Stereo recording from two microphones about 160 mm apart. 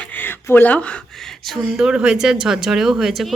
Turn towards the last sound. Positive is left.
turn(degrees=0)  # may be behind; listen again after turning